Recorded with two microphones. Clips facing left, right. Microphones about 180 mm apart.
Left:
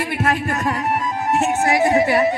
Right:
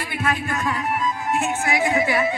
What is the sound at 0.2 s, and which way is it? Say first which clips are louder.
Music: left 2 dB; 40° left (ahead or behind).